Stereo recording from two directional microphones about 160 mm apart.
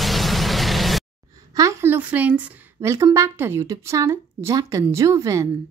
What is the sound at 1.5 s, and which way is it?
Speech, 20° right (ahead or behind).